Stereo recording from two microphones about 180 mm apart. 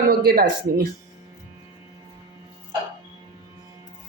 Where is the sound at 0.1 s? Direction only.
55° right (ahead or behind).